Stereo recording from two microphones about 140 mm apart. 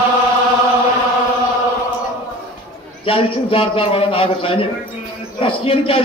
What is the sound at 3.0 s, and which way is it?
A man's voice, 40° left (ahead or behind).